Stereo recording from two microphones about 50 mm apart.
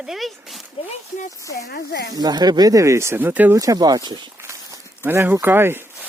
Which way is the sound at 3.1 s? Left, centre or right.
Right.